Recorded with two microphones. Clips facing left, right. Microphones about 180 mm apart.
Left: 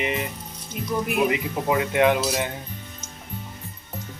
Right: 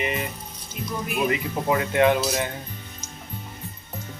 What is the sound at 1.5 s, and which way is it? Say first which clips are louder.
Speech: even; 10° left (ahead or behind).